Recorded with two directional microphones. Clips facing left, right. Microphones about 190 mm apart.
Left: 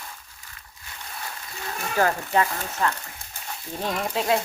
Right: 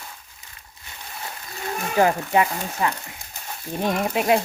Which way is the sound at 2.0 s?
15° right (ahead or behind).